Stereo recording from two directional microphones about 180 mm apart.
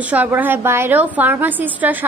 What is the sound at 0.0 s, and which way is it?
A woman's voice, 10° right (ahead or behind).